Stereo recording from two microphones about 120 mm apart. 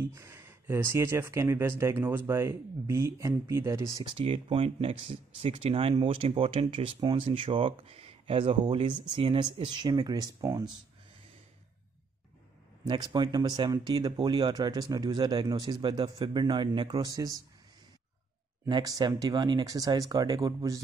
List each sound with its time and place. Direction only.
0.0 s speech: 20° right (ahead or behind)
4.0 s speech: 45° right (ahead or behind)
12.8 s speech: 40° right (ahead or behind)
18.7 s speech: 35° right (ahead or behind)